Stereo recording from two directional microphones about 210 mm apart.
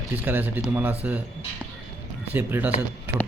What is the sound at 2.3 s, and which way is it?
Speech, 10° right (ahead or behind).